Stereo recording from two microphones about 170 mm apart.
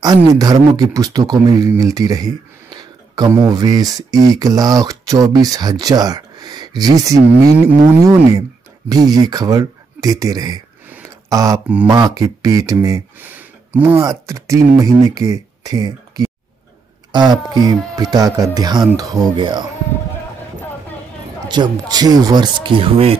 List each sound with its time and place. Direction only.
0.0 s speech: 20° right (ahead or behind)
21.5 s speech: 25° right (ahead or behind)